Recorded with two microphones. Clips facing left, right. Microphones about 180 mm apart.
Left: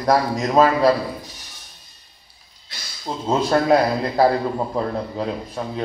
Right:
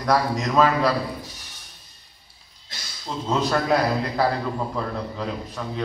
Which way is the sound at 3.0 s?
40° left (ahead or behind).